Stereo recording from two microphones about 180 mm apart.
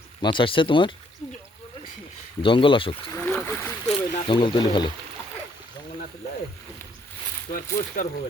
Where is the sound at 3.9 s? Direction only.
30° left (ahead or behind).